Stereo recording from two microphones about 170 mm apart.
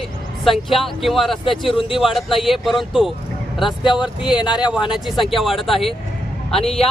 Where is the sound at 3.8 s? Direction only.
30° left (ahead or behind).